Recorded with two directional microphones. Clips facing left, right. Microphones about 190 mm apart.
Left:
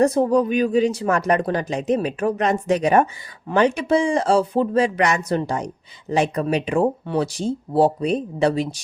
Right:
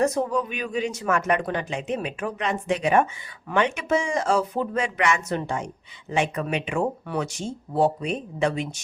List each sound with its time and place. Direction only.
0.0 s speech: 35° left (ahead or behind)